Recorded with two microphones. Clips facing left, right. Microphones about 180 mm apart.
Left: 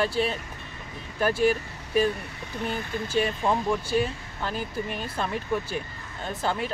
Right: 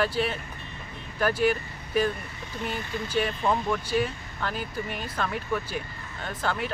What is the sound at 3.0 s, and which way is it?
Speech, 25° left (ahead or behind).